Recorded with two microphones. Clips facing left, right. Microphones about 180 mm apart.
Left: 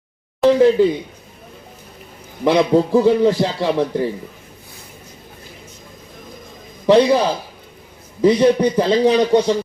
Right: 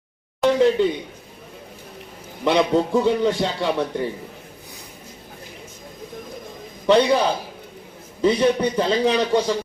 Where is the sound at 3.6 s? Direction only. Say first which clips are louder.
Left 5 dB; 30° left (ahead or behind).